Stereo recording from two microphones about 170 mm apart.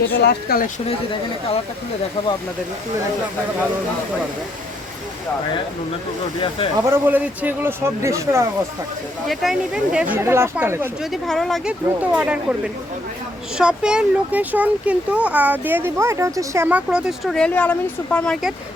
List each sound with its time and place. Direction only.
0.1 s speech: 70° left (ahead or behind)
0.9 s speech: 35° left (ahead or behind)
6.8 s a child's voice: 15° right (ahead or behind)
9.2 s a child's voice: centre (ahead or behind)
11.0 s a child's voice: centre (ahead or behind)